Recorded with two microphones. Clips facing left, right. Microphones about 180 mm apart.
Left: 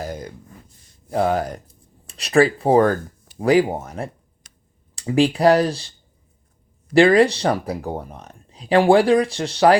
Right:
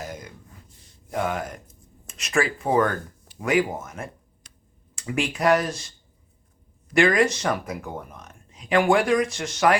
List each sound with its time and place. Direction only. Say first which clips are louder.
0.0 s gasp: left 6 dB; 35° left (ahead or behind)
1.1 s speech: left 7 dB; 35° left (ahead or behind)
6.9 s speech: left 6 dB; 30° left (ahead or behind)